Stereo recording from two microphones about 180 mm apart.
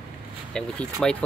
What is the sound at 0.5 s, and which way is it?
Speech, 5° left (ahead or behind).